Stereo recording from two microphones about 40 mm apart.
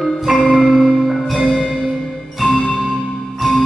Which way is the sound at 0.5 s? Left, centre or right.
Centre.